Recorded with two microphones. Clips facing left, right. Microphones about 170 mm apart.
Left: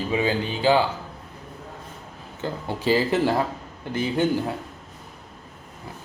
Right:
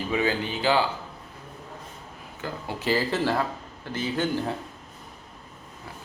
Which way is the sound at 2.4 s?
20° left (ahead or behind).